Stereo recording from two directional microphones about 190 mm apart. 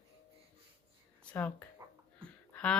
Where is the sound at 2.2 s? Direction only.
5° left (ahead or behind).